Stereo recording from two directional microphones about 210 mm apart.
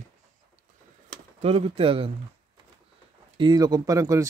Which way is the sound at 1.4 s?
30° right (ahead or behind).